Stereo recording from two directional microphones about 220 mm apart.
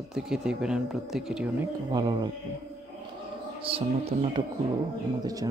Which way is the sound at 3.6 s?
25° right (ahead or behind).